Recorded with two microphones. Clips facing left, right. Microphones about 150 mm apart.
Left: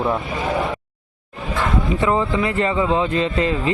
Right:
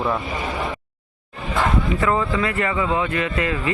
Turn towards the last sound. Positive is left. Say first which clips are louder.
# left 3 dB
turn(degrees=25)  # may be behind; listen again after turning